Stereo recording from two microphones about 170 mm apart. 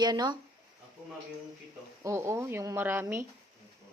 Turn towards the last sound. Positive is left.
turn(degrees=-15)  # may be behind; listen again after turning